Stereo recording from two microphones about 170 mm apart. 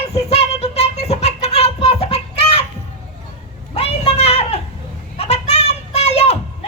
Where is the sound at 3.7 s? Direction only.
35° left (ahead or behind).